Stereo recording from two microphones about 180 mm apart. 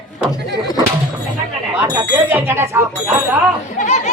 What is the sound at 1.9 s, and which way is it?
Speech, 10° right (ahead or behind).